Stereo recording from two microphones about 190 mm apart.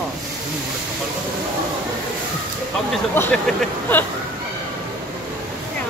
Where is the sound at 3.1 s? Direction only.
10° left (ahead or behind).